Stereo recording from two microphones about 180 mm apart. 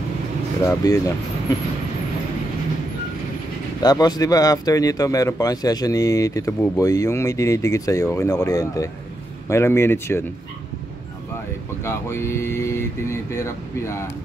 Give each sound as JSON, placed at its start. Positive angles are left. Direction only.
{"t": 0.7, "sound": "speech", "side_deg": 15}
{"t": 3.8, "sound": "speech", "side_deg": 20}
{"t": 11.8, "sound": "speech", "side_deg": 15}